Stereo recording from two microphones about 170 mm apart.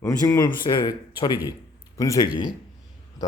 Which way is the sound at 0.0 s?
20° left (ahead or behind).